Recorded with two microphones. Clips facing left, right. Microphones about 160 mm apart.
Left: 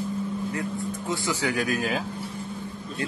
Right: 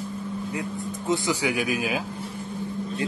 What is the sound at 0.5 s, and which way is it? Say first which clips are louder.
Mantra: left 1 dB; 20° right (ahead or behind).